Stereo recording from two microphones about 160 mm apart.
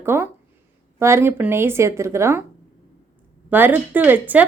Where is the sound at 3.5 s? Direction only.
10° right (ahead or behind).